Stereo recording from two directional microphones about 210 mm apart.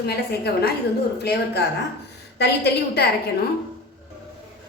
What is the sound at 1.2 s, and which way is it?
A woman's voice, 50° left (ahead or behind).